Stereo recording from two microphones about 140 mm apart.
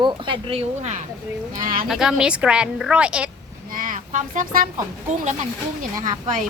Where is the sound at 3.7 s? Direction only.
75° right (ahead or behind).